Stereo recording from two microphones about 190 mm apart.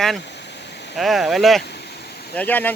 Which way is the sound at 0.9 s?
Centre (ahead or behind).